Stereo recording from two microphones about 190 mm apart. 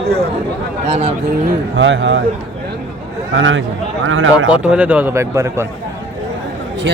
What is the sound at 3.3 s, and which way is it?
A man's voice, 90° right.